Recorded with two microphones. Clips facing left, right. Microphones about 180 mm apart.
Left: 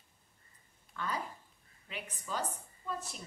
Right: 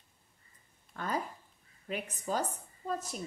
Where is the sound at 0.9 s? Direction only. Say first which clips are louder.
Right 3 dB; 45° right (ahead or behind).